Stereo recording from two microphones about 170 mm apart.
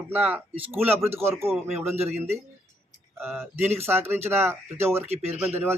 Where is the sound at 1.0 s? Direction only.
15° right (ahead or behind).